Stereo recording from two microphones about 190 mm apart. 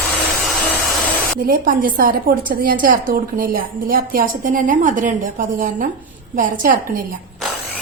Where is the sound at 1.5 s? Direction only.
45° right (ahead or behind).